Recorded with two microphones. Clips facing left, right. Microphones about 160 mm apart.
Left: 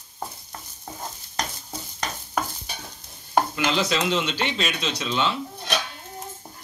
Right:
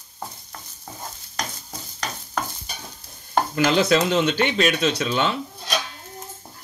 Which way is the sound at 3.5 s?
50° right (ahead or behind).